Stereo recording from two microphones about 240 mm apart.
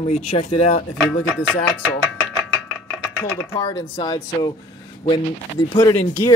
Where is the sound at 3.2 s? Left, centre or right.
Centre.